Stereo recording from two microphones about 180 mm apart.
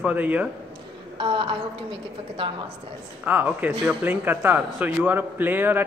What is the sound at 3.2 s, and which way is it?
A man's voice, 10° right (ahead or behind).